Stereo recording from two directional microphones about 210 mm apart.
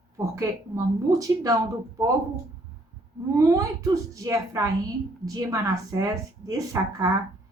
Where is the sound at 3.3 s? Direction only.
15° right (ahead or behind).